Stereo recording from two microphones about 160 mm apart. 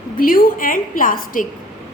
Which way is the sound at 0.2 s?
60° left (ahead or behind).